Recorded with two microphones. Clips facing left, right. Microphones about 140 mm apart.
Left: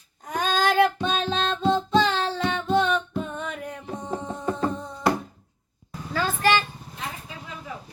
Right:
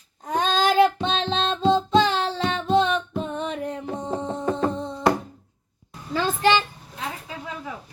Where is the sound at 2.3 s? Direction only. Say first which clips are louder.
Right 2 dB; 25° right (ahead or behind).